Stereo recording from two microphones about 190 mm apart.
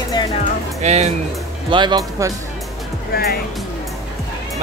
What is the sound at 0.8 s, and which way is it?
Speech, 35° right (ahead or behind).